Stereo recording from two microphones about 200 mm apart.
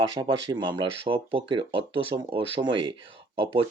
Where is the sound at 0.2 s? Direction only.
20° right (ahead or behind).